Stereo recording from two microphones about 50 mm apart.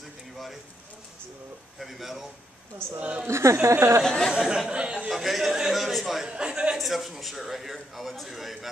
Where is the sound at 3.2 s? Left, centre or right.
Right.